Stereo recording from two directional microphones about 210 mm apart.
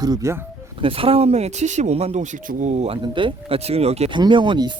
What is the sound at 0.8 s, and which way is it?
Speech, 25° right (ahead or behind).